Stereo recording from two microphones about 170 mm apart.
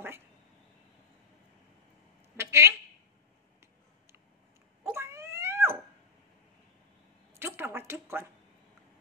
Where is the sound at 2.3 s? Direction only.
15° right (ahead or behind).